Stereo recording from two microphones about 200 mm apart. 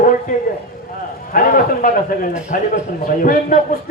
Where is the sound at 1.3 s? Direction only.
45° left (ahead or behind).